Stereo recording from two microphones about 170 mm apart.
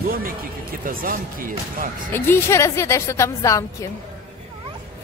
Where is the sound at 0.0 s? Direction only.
60° right (ahead or behind).